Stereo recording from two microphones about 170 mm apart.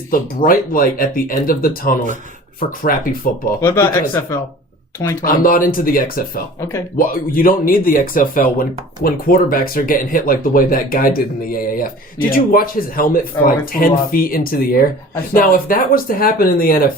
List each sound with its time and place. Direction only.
0.1 s speech: 55° left (ahead or behind)
3.6 s speech: 15° left (ahead or behind)
5.2 s speech: 55° left (ahead or behind)